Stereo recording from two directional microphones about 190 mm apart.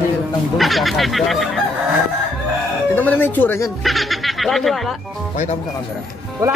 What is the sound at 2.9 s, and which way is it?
Speech, 10° left (ahead or behind).